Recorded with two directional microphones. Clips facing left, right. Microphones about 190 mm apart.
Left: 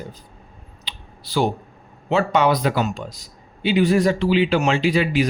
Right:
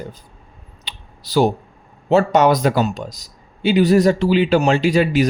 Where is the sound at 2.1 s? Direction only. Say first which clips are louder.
Right 4 dB; 45° right (ahead or behind).